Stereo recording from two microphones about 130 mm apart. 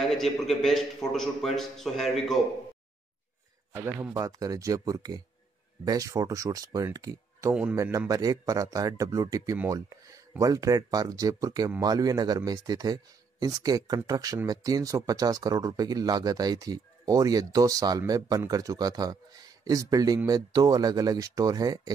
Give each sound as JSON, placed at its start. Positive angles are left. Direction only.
{"t": 0.0, "sound": "a man's voice", "side_deg": 0}
{"t": 3.7, "sound": "a man's voice", "side_deg": -20}